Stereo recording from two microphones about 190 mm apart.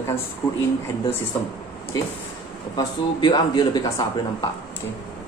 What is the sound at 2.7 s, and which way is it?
Speech, 25° left (ahead or behind).